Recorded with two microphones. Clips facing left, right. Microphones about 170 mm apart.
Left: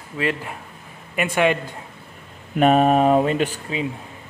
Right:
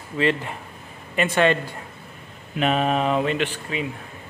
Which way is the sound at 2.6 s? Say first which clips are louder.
Left 6 dB; 45° left (ahead or behind).